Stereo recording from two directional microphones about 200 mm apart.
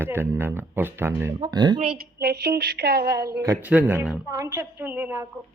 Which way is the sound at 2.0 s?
50° right (ahead or behind).